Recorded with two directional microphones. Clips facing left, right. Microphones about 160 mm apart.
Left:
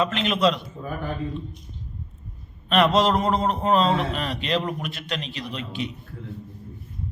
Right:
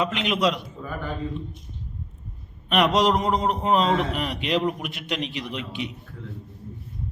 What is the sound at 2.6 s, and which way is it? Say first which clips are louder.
A man's voice: left 1 dB; 15° right (ahead or behind).